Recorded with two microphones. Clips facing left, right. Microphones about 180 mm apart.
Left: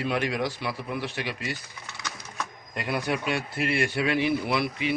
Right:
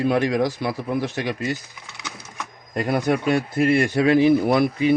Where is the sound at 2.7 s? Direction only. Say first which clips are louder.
Right 8 dB; 45° right (ahead or behind).